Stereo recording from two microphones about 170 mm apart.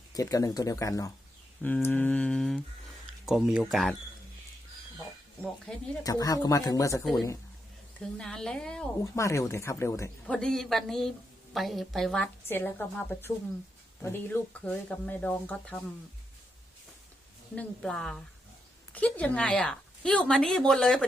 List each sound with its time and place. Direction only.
0.1 s speech: 20° left (ahead or behind); by 3.9 s centre (ahead or behind)
6.0 s speech: 20° left (ahead or behind)
7.0 s speech: centre (ahead or behind)
9.1 s speech: 15° left (ahead or behind)
10.3 s speech: 5° left (ahead or behind)
17.5 s speech: 5° left (ahead or behind)